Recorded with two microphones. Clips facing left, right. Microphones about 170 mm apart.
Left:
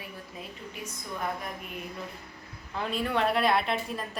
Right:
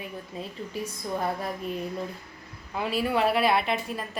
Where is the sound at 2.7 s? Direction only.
5° right (ahead or behind).